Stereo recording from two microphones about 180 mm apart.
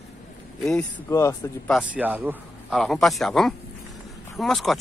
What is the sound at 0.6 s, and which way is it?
Speech, 5° left (ahead or behind).